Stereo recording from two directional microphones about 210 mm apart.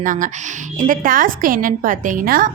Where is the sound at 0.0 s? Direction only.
40° right (ahead or behind).